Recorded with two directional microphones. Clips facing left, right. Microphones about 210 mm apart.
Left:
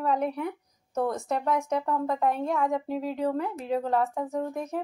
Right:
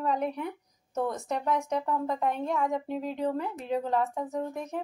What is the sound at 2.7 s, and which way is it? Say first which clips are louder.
Speech: left 2 dB; centre (ahead or behind).